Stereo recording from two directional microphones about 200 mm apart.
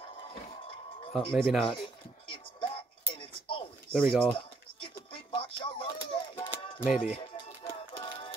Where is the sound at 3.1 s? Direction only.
25° left (ahead or behind).